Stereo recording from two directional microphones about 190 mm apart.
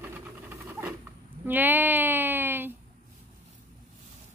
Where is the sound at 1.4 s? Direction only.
10° right (ahead or behind).